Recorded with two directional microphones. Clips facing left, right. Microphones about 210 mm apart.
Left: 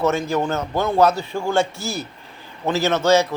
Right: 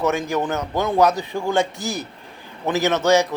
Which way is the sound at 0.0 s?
15° right (ahead or behind).